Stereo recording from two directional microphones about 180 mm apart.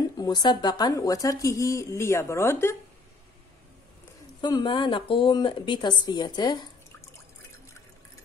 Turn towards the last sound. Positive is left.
turn(degrees=25)  # may be behind; listen again after turning